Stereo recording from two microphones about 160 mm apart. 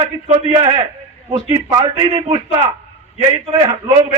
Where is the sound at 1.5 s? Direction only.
25° right (ahead or behind).